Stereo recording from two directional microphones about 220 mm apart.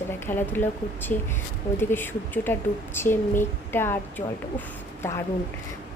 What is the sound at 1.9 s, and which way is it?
A woman's voice, 10° left (ahead or behind).